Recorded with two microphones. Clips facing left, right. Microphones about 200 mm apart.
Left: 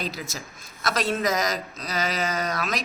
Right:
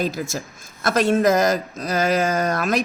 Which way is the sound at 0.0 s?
50° right (ahead or behind).